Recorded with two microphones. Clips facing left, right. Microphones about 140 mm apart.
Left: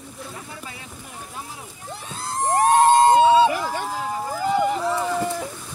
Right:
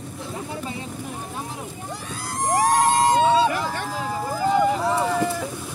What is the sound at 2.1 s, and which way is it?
Vehicle, 25° left (ahead or behind).